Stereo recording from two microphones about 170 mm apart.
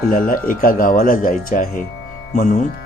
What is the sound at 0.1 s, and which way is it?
Speech, 55° left (ahead or behind).